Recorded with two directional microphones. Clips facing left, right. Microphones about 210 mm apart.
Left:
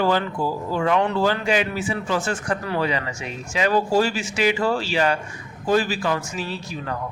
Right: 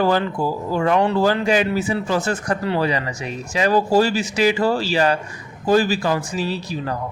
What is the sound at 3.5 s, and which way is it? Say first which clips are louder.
A man's voice: right 3 dB; 40° right (ahead or behind).